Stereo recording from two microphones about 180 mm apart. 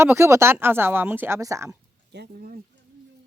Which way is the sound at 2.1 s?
60° right (ahead or behind).